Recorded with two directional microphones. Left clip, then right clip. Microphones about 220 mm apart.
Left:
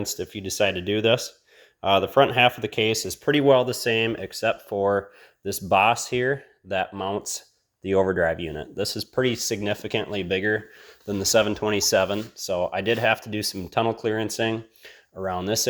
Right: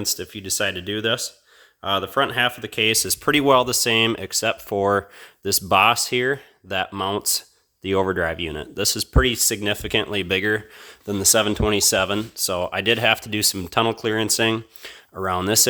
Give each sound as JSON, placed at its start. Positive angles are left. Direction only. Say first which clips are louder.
{"t": 0.0, "sound": "speech", "louder": "right 3 dB", "side_deg": -10}
{"t": 2.8, "sound": "speech", "louder": "right 5 dB", "side_deg": -25}
{"t": 6.9, "sound": "speech", "louder": "right 5 dB", "side_deg": -25}
{"t": 12.1, "sound": "speech", "louder": "right 3 dB", "side_deg": -25}